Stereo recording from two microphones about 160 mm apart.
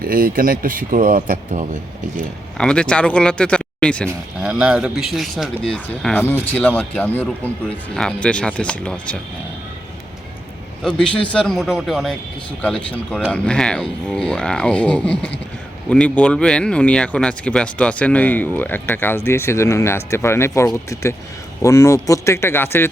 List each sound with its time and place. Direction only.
0.0 s speech: 60° right (ahead or behind)
2.6 s speech: 5° left (ahead or behind)
4.4 s speech: 5° right (ahead or behind)
10.8 s speech: 5° left (ahead or behind)